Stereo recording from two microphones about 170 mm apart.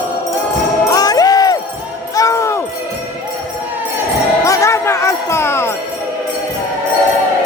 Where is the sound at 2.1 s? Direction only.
20° left (ahead or behind).